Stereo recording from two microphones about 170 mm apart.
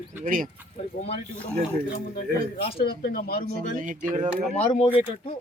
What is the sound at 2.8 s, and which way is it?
Speech, 65° left (ahead or behind).